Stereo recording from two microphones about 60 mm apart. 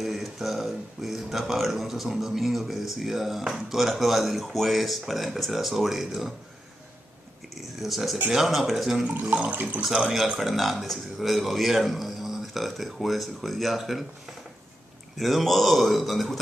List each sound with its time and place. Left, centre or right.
0.0 s speech: centre
7.8 s speech: centre
9.2 s water: right
10.1 s speech: centre
15.1 s speech: centre